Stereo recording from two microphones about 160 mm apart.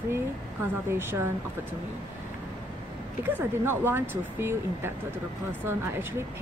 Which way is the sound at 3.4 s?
15° right (ahead or behind).